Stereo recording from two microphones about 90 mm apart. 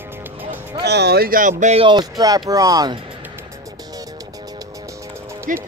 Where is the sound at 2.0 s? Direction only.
45° right (ahead or behind).